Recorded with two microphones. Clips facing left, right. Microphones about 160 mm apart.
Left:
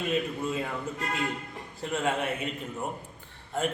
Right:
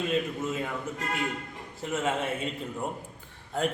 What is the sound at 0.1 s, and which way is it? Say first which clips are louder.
Speech: even; 10° left (ahead or behind).